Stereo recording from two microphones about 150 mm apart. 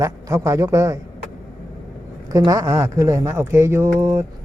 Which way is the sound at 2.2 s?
25° right (ahead or behind).